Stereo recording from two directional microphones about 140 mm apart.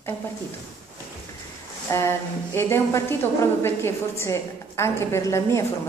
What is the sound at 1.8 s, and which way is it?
A woman's voice, 20° left (ahead or behind).